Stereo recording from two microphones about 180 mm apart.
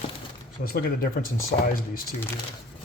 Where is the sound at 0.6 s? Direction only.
55° left (ahead or behind).